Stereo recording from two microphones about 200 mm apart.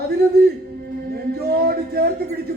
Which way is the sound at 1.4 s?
50° right (ahead or behind).